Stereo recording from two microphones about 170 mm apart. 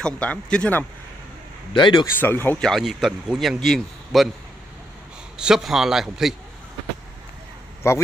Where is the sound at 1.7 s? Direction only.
30° left (ahead or behind).